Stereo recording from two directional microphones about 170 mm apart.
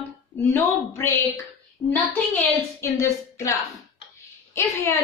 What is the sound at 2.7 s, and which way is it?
A woman's voice, 15° left (ahead or behind).